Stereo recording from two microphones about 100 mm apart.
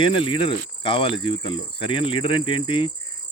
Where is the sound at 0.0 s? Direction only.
60° left (ahead or behind).